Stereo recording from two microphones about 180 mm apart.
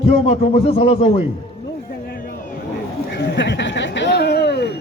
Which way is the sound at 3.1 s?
70° left (ahead or behind).